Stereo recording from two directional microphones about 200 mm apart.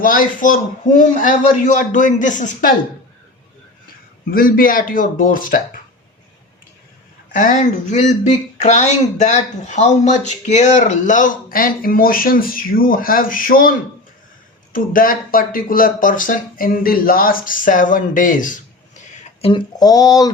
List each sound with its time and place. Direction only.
0.0 s speech: 45° left (ahead or behind)
4.3 s speech: 45° left (ahead or behind)
7.3 s speech: 40° left (ahead or behind); by 20.3 s 20° left (ahead or behind)